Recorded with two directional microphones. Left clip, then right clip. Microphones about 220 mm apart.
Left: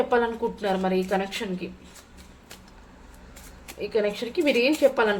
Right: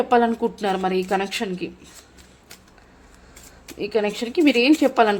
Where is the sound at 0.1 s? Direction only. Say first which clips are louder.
Right 5 dB; 45° right (ahead or behind).